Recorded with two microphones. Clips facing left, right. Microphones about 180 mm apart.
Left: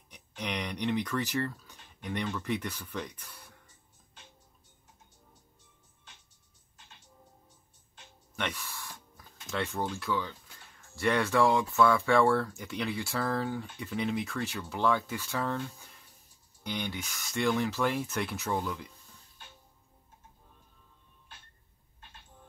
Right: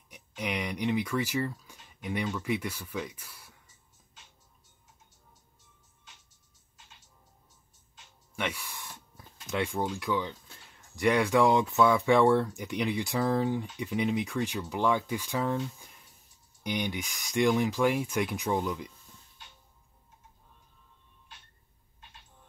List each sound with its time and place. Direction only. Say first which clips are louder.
0.1 s speech: right 2 dB; 10° right (ahead or behind)
8.4 s speech: right 2 dB; 10° right (ahead or behind)